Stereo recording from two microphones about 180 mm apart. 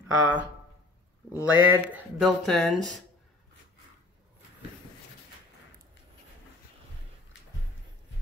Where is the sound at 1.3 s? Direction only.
10° right (ahead or behind).